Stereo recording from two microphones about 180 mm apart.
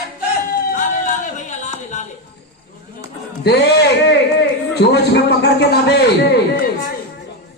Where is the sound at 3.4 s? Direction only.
70° left (ahead or behind).